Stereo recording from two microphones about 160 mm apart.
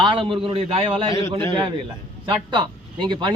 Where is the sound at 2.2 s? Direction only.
30° right (ahead or behind).